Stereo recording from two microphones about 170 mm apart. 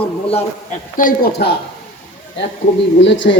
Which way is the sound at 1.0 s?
60° left (ahead or behind).